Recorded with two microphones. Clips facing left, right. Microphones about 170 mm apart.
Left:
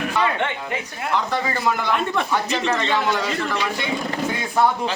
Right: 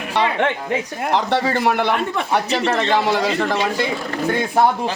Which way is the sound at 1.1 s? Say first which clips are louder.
Right 5 dB; 75° right (ahead or behind).